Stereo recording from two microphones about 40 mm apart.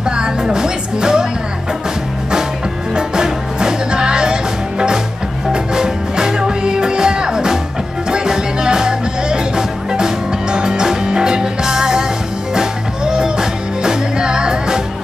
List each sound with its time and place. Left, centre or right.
0.1 s speech: centre
3.0 s music: centre